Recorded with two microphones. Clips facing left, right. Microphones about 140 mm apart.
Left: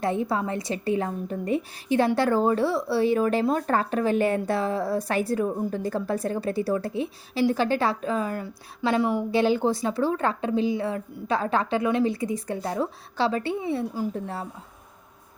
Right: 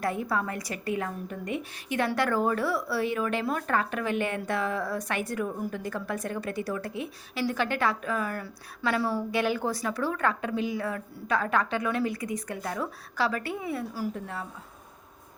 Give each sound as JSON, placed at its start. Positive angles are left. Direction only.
{"t": 0.0, "sound": "a woman's voice", "side_deg": 25}